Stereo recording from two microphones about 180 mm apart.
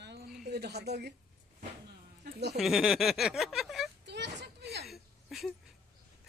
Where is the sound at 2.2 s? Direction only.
70° right (ahead or behind).